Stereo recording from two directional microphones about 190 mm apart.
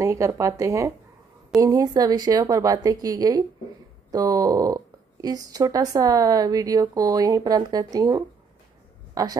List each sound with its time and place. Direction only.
0.0 s a man's voice: 15° right (ahead or behind)